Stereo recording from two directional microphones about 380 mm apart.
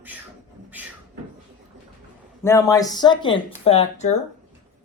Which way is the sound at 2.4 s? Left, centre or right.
Centre.